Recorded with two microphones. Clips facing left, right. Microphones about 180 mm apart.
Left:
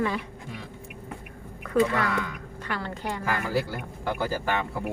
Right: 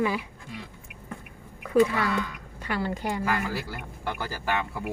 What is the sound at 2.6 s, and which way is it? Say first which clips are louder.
Speech: right 4 dB; 10° right (ahead or behind).